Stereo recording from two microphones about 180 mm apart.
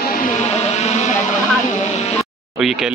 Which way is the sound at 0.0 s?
50° left (ahead or behind).